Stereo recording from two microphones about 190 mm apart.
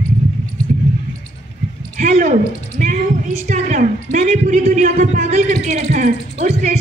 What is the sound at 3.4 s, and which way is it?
A woman's voice, 40° right (ahead or behind).